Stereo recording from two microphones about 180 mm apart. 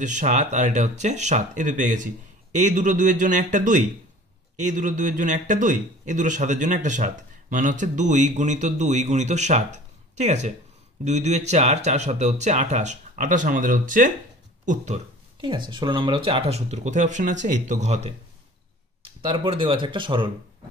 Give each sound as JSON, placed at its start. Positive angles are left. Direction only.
{"t": 0.0, "sound": "a man's voice", "side_deg": -45}
{"t": 15.4, "sound": "speech", "side_deg": -25}
{"t": 19.2, "sound": "speech", "side_deg": -30}